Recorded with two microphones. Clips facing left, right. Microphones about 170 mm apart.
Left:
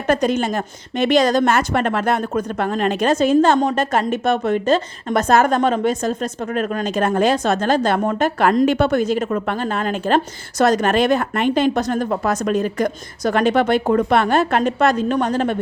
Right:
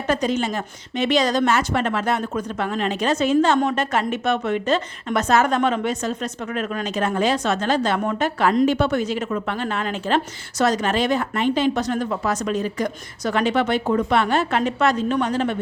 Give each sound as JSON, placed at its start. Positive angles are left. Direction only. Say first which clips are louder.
{"t": 0.1, "sound": "a woman's voice", "louder": "left 4 dB", "side_deg": 55}
{"t": 11.8, "sound": "a woman's voice", "louder": "left 3 dB", "side_deg": 45}